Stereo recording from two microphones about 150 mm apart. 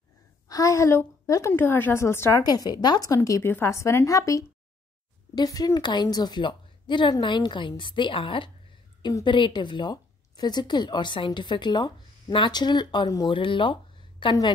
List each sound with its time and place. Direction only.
0.5 s a woman's voice: 20° left (ahead or behind)